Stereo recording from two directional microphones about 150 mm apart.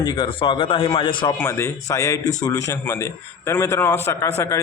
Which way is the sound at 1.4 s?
15° left (ahead or behind).